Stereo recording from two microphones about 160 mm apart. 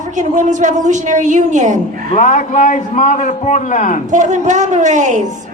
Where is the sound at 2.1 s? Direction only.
50° left (ahead or behind).